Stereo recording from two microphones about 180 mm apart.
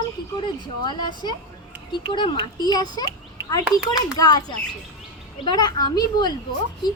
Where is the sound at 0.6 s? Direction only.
25° left (ahead or behind).